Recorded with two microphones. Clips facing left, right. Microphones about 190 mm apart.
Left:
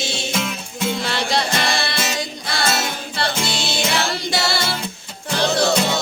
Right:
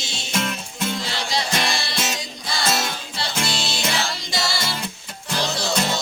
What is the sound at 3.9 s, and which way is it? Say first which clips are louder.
Music: left 5 dB; 60° left (ahead or behind).